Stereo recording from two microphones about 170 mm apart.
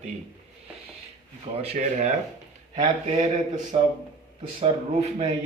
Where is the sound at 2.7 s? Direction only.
45° right (ahead or behind).